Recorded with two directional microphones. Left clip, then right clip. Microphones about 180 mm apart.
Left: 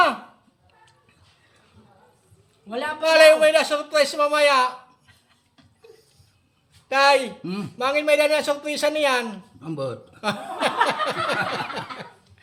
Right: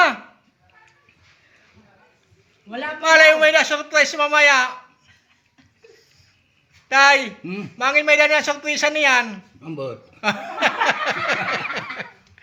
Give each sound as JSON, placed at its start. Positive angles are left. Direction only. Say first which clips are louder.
{"t": 2.6, "sound": "a man's voice", "louder": "left 1 dB", "side_deg": 40}
{"t": 3.0, "sound": "speech", "louder": "right 2 dB", "side_deg": 0}
{"t": 5.9, "sound": "a sound", "louder": "left 2 dB", "side_deg": 5}
{"t": 6.8, "sound": "speech", "louder": "right 4 dB", "side_deg": 0}